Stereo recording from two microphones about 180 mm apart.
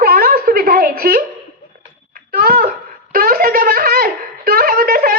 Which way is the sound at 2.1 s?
55° right (ahead or behind).